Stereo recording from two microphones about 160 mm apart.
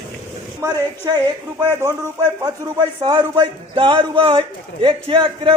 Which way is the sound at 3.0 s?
30° right (ahead or behind).